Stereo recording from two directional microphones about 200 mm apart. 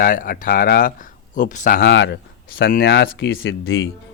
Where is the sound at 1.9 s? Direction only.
65° left (ahead or behind).